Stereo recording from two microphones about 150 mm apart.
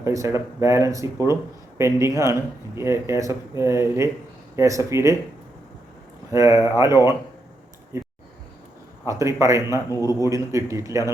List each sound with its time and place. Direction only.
0.0 s speech: 20° right (ahead or behind)
6.3 s speech: 20° right (ahead or behind)
7.9 s a sound: 20° right (ahead or behind)
9.0 s speech: 20° right (ahead or behind)
9.9 s speech: 25° left (ahead or behind)
10.2 s speech: 20° right (ahead or behind)